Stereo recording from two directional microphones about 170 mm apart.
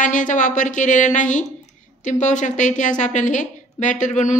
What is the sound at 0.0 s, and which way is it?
A woman's voice, 50° left (ahead or behind).